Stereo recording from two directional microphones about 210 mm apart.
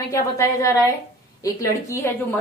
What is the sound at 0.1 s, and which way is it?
A woman's voice, 15° left (ahead or behind).